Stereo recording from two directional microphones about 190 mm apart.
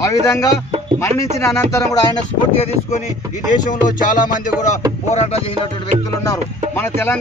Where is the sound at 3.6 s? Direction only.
45° left (ahead or behind).